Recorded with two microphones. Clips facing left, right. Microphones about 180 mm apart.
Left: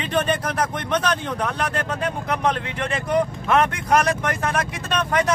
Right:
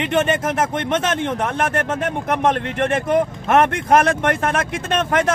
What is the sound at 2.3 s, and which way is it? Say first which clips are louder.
Speech: right 5 dB; 50° right (ahead or behind).